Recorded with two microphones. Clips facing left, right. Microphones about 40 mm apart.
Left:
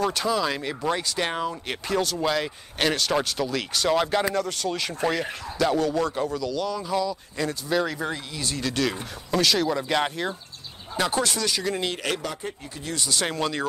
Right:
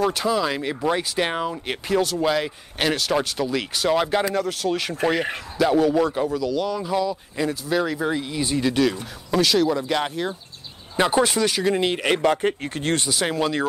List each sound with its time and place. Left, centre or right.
0.0 s speech: centre
9.3 s speech: centre
11.0 s speech: right
12.2 s speech: right
13.1 s speech: centre